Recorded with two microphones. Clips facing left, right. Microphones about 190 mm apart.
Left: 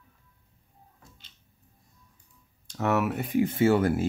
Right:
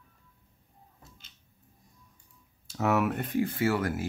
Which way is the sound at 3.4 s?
25° left (ahead or behind).